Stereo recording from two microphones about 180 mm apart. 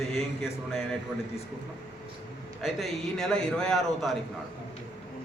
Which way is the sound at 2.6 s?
Centre (ahead or behind).